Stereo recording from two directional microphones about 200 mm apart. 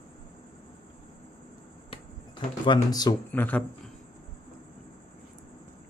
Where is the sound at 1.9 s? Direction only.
25° left (ahead or behind).